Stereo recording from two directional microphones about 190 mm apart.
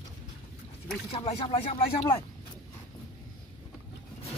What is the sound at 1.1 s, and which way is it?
Speech, 30° left (ahead or behind).